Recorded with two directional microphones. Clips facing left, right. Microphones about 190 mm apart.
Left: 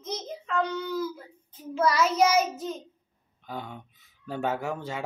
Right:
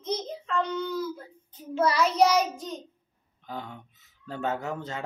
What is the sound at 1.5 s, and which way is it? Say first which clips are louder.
Child singing: even; centre (ahead or behind).